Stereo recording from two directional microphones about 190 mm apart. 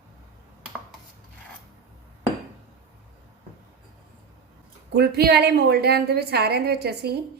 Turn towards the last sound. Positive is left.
turn(degrees=-55)  # may be behind; listen again after turning